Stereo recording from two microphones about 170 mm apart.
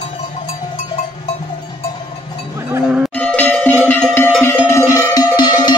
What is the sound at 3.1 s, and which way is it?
Music, 10° left (ahead or behind).